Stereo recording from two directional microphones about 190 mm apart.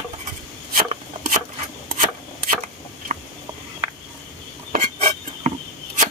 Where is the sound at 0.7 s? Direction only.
40° right (ahead or behind).